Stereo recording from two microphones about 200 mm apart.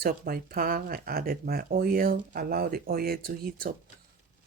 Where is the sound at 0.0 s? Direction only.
50° right (ahead or behind).